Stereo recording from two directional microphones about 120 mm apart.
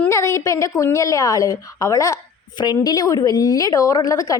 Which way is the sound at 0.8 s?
25° left (ahead or behind).